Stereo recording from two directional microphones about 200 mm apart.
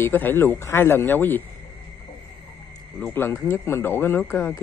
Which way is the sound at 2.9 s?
10° left (ahead or behind).